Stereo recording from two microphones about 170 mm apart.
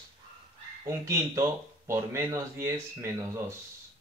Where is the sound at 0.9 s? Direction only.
15° right (ahead or behind).